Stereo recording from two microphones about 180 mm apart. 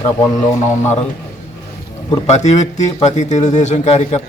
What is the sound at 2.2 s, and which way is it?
Speech, 40° left (ahead or behind).